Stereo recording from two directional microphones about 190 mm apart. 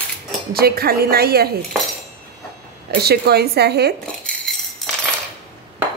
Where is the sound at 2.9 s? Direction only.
55° right (ahead or behind).